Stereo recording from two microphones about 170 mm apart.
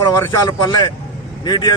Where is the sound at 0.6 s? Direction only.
25° left (ahead or behind).